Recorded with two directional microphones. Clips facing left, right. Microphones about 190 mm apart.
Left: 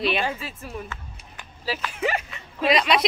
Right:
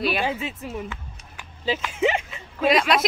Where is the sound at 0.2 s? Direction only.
15° right (ahead or behind).